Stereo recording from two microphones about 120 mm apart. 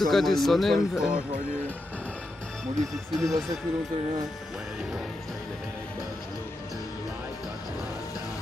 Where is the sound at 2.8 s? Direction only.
5° left (ahead or behind).